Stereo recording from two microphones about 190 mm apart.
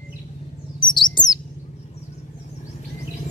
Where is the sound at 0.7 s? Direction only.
25° left (ahead or behind).